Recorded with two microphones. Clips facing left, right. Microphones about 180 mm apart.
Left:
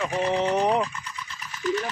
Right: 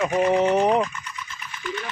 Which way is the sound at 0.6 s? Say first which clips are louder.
Right 3 dB; 5° right (ahead or behind).